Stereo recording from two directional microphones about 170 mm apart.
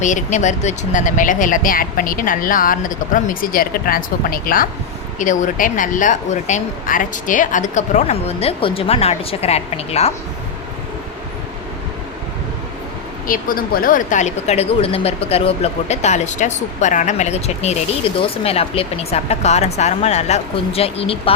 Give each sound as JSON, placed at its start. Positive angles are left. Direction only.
{"t": 0.0, "sound": "speech", "side_deg": 45}
{"t": 13.2, "sound": "speech", "side_deg": 55}